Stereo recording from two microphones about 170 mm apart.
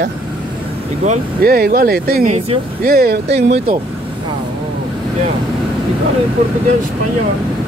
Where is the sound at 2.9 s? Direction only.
65° right (ahead or behind).